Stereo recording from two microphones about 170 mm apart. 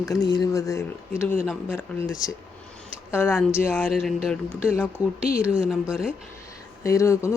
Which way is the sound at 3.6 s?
15° left (ahead or behind).